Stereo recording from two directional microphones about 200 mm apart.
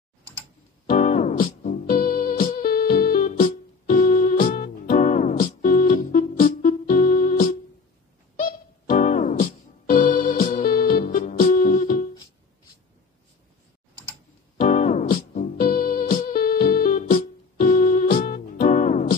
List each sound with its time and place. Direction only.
0.8 s music: 35° left (ahead or behind)
14.6 s music: 35° left (ahead or behind)